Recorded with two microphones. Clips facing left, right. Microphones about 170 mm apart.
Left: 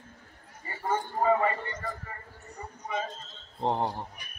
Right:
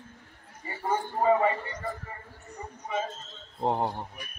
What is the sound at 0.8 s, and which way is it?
Speech, 15° right (ahead or behind).